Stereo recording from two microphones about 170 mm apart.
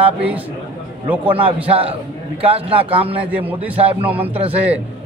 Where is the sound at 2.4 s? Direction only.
35° right (ahead or behind).